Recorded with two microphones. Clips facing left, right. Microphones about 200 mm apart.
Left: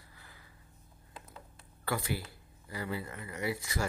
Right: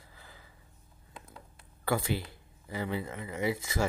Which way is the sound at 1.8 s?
25° right (ahead or behind).